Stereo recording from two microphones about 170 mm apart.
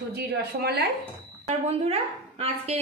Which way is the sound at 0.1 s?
70° right (ahead or behind).